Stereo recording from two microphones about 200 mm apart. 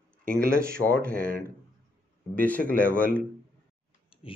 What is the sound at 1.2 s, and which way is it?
Speech, 45° right (ahead or behind).